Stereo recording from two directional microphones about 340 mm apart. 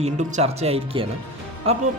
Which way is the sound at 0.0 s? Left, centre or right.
Centre.